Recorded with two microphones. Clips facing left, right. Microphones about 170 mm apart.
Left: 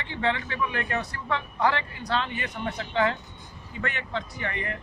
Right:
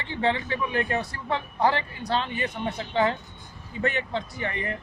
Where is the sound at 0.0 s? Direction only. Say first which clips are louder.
Right 2 dB; 35° right (ahead or behind).